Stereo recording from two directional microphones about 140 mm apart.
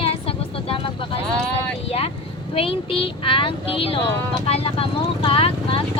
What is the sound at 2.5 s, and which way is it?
Speech, 40° left (ahead or behind).